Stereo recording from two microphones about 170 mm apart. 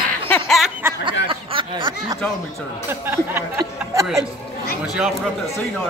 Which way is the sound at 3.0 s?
15° right (ahead or behind).